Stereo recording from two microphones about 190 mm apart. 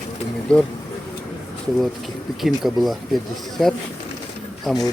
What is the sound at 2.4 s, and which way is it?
Speech, centre (ahead or behind).